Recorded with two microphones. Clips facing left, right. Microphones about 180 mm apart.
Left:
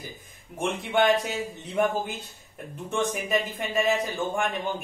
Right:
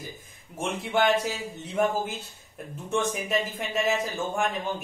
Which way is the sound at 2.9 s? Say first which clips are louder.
Left 1 dB; centre (ahead or behind).